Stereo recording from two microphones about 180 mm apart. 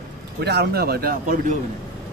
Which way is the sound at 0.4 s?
65° right (ahead or behind).